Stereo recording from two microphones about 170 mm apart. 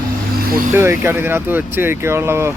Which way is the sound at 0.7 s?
15° right (ahead or behind).